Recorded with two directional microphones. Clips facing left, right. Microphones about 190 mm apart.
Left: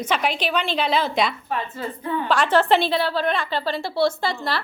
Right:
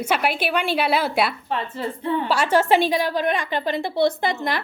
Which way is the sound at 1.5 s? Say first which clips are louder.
Right 1 dB; 30° right (ahead or behind).